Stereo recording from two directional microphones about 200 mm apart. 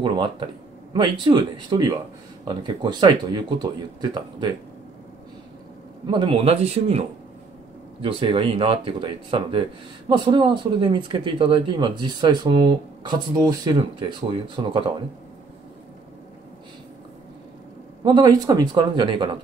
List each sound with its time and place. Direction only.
0.0 s speech: 25° right (ahead or behind)
6.0 s speech: 25° right (ahead or behind)
18.0 s speech: 20° right (ahead or behind)